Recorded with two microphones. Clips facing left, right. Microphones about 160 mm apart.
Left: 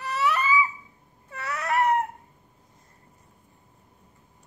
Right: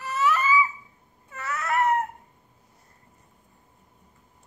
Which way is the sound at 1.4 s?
15° left (ahead or behind).